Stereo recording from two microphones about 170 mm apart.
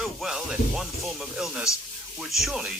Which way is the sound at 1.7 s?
15° left (ahead or behind).